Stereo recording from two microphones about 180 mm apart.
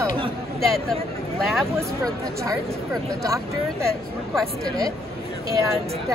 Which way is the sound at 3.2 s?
15° right (ahead or behind).